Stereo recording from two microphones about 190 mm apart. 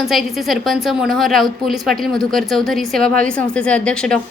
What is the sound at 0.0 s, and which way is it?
A woman's voice, centre (ahead or behind).